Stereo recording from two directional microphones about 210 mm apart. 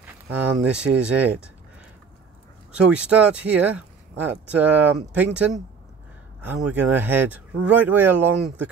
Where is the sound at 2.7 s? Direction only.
5° right (ahead or behind).